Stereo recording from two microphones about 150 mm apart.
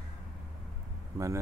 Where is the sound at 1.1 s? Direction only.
20° right (ahead or behind).